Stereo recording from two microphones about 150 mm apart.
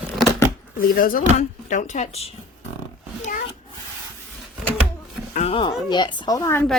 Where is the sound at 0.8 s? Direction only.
70° left (ahead or behind).